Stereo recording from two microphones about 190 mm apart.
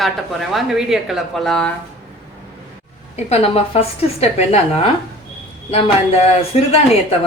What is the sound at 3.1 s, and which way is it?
A woman's voice, 35° left (ahead or behind).